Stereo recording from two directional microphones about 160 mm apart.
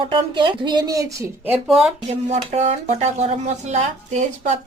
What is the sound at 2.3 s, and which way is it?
Speech, 45° right (ahead or behind).